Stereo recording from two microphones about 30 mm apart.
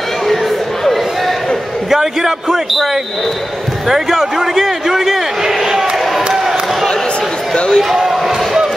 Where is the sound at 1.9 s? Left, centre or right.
Centre.